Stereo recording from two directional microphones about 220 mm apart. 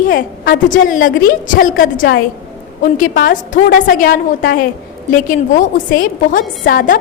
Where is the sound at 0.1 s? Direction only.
40° left (ahead or behind).